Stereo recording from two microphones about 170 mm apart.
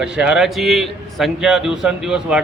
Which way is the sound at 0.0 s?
5° right (ahead or behind).